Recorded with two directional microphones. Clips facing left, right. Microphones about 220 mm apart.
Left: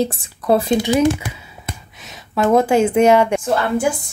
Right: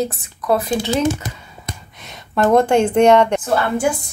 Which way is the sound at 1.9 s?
5° left (ahead or behind).